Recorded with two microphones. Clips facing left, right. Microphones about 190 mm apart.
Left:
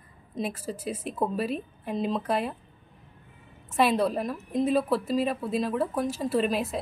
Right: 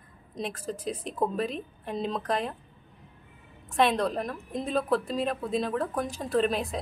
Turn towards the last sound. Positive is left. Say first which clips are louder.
# even
turn(degrees=5)  # may be behind; listen again after turning